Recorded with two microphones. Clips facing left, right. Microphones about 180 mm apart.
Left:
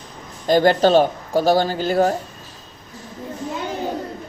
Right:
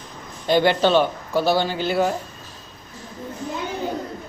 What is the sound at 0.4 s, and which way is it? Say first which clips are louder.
A man's voice: left 3 dB; 40° left (ahead or behind).